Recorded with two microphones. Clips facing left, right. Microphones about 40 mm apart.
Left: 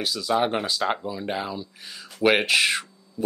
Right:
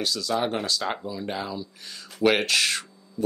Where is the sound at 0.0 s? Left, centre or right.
Centre.